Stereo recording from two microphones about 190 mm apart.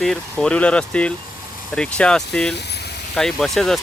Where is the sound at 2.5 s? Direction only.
60° left (ahead or behind).